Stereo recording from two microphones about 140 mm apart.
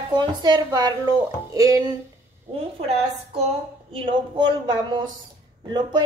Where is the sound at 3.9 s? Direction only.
40° right (ahead or behind).